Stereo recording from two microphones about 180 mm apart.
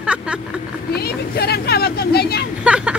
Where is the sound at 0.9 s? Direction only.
60° left (ahead or behind).